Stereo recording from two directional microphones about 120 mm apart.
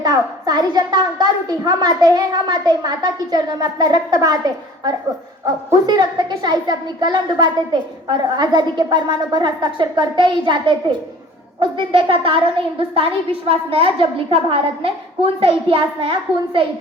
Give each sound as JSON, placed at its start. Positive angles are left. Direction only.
{"t": 0.0, "sound": "a woman's voice", "side_deg": -35}